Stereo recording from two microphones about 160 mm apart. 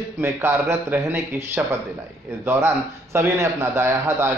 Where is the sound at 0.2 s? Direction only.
15° right (ahead or behind).